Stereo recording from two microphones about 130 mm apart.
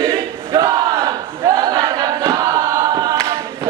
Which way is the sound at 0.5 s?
30° right (ahead or behind).